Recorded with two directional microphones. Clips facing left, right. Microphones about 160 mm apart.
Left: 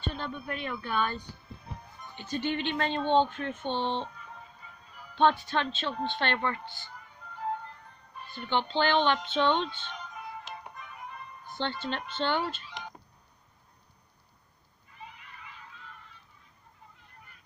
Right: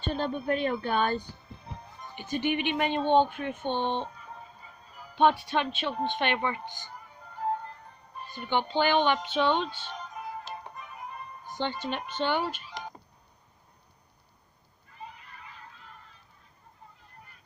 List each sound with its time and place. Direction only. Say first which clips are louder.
0.1 s speech: right 8 dB; 30° right (ahead or behind)
2.1 s speech: right 3 dB; 15° right (ahead or behind)
4.2 s music: right 2 dB; 40° right (ahead or behind)
5.4 s speech: right 2 dB; 15° right (ahead or behind)
7.0 s music: right 3 dB; 40° right (ahead or behind)
8.3 s speech: right 1 dB; 10° right (ahead or behind)
9.9 s music: right 3 dB; 40° right (ahead or behind)
11.4 s speech: right 1 dB; 15° right (ahead or behind)
15.0 s cat: right 3 dB; 40° right (ahead or behind)